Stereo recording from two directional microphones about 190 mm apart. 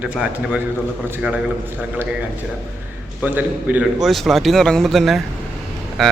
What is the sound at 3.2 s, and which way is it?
Speech, 10° right (ahead or behind).